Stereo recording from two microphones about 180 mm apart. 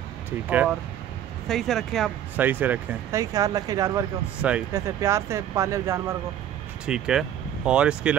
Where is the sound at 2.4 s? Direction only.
10° right (ahead or behind).